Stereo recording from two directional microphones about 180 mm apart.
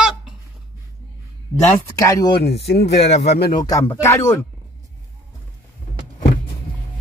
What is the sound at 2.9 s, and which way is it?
Speech, 70° left (ahead or behind).